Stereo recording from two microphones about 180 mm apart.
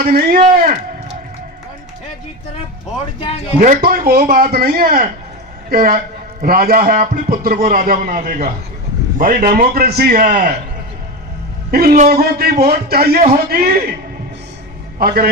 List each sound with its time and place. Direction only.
0.0 s a man's voice: 60° right (ahead or behind)
3.2 s speech: 35° left (ahead or behind)
3.6 s a man's voice: 50° right (ahead or behind)
11.7 s a man's voice: 55° right (ahead or behind)
14.9 s a man's voice: 60° right (ahead or behind)